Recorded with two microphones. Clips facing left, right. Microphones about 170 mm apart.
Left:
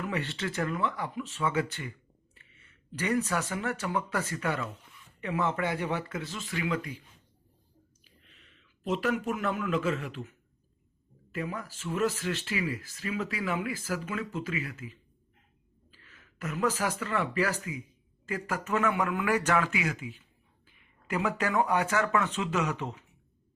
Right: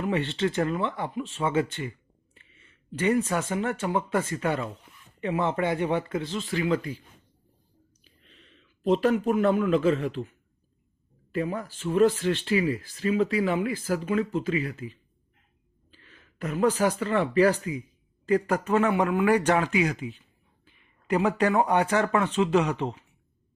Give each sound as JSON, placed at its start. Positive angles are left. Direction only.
{"t": 0.0, "sound": "speech", "side_deg": -25}
{"t": 8.3, "sound": "speech", "side_deg": -35}
{"t": 11.3, "sound": "speech", "side_deg": -30}